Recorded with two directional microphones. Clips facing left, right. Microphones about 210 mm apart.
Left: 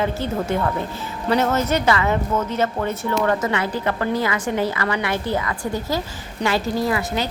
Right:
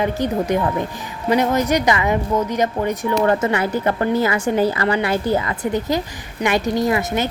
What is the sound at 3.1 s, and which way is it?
A woman's voice, 30° right (ahead or behind).